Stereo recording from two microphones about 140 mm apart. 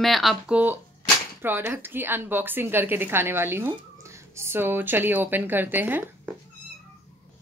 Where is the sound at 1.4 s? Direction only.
15° right (ahead or behind).